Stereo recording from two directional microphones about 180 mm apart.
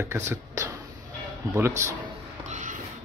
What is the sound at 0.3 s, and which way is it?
Whispering, 15° right (ahead or behind).